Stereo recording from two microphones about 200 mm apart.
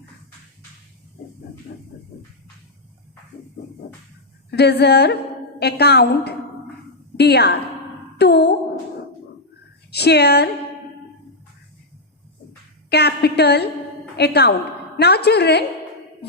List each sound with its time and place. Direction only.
4.5 s a woman's voice: 55° left (ahead or behind)
9.9 s a woman's voice: 55° left (ahead or behind)
12.9 s a woman's voice: 55° left (ahead or behind)